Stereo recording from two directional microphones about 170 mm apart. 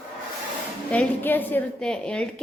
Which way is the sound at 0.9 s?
10° left (ahead or behind).